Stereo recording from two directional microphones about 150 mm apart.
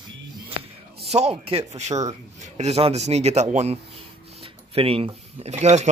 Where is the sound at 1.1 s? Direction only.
45° right (ahead or behind).